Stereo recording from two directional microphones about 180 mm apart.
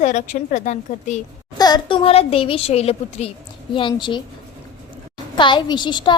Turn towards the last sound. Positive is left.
turn(degrees=25)  # may be behind; listen again after turning